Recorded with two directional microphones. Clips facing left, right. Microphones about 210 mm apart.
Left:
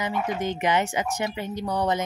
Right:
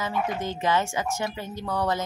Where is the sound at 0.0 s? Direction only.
20° left (ahead or behind).